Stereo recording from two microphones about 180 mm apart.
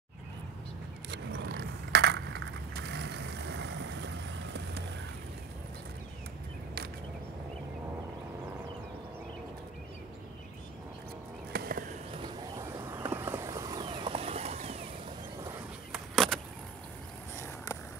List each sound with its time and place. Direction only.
1.1 s crushing: 65° right (ahead or behind)
11.5 s a sound: 55° right (ahead or behind)
12.8 s bird: 10° right (ahead or behind); by 14.9 s 35° right (ahead or behind)
15.9 s vehicle: centre (ahead or behind)